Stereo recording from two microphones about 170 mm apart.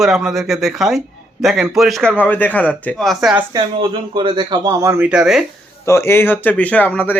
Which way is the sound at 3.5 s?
25° right (ahead or behind).